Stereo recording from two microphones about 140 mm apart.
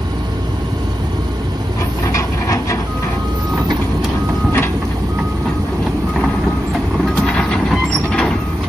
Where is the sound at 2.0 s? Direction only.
20° left (ahead or behind).